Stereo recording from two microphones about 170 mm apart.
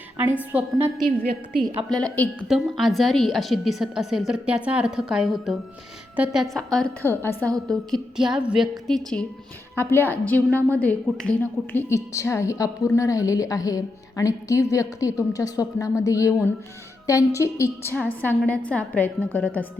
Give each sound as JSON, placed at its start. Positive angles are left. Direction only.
{"t": 0.2, "sound": "a woman's voice", "side_deg": -10}
{"t": 1.0, "sound": "a woman's voice", "side_deg": -60}
{"t": 1.9, "sound": "a woman's voice", "side_deg": 5}
{"t": 7.2, "sound": "a woman's voice", "side_deg": 15}
{"t": 7.7, "sound": "a woman's voice", "side_deg": 0}